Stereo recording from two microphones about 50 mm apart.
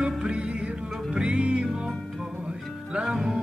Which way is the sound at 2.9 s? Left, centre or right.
Centre.